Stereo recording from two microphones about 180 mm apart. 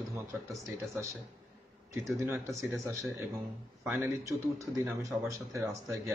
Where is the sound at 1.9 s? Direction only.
15° right (ahead or behind).